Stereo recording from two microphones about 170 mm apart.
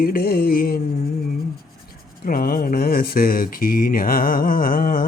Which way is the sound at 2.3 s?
60° left (ahead or behind).